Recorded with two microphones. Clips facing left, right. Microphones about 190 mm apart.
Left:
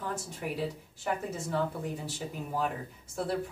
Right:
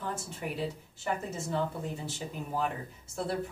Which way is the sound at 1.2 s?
10° left (ahead or behind).